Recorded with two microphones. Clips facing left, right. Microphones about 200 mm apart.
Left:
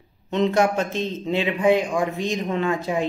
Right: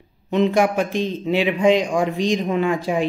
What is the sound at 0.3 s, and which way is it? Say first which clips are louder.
Speech: right 2 dB; 10° right (ahead or behind).